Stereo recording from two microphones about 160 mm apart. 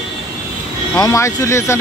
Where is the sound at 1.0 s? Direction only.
20° left (ahead or behind).